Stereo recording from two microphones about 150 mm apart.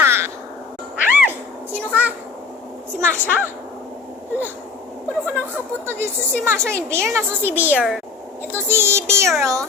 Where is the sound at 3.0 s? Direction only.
10° left (ahead or behind).